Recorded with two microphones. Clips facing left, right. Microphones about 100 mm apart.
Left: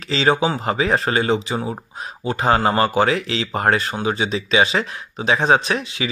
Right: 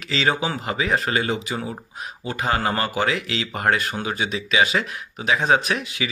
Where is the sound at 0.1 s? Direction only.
30° left (ahead or behind).